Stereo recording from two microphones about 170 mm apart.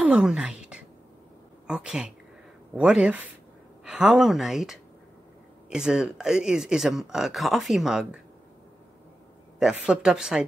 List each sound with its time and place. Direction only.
0.0 s a sound: 5° right (ahead or behind)
1.7 s speech: 5° right (ahead or behind)
9.6 s speech: 5° right (ahead or behind)